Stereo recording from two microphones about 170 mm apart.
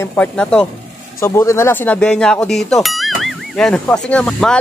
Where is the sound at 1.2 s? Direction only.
15° left (ahead or behind).